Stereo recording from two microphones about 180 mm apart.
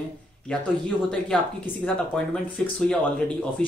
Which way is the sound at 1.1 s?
5° left (ahead or behind).